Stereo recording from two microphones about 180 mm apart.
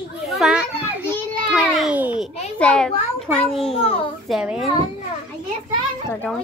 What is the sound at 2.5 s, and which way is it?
Speech, 5° left (ahead or behind).